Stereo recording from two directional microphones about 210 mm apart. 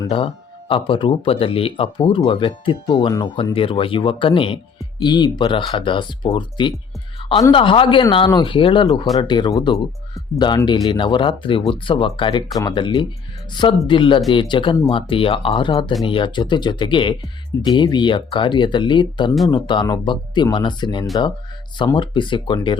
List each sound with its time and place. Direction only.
0.7 s speech: 25° left (ahead or behind)